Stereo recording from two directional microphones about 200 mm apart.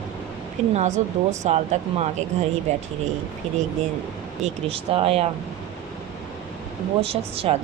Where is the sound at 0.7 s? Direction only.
35° right (ahead or behind).